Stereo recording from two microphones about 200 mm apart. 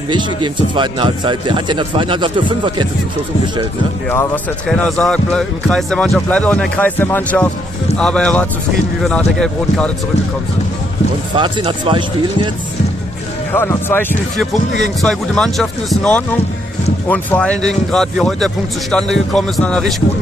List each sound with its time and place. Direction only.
0.1 s speech: 25° right (ahead or behind)
4.6 s speech: 5° left (ahead or behind)
11.3 s speech: 25° right (ahead or behind)
13.5 s speech: 10° left (ahead or behind)